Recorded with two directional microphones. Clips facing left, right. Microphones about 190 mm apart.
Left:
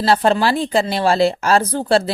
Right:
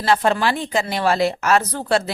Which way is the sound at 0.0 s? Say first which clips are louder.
Left 3 dB; 35° left (ahead or behind).